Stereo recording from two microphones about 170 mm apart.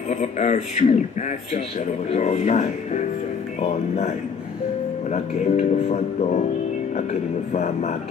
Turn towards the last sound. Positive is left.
turn(degrees=45)  # may be behind; listen again after turning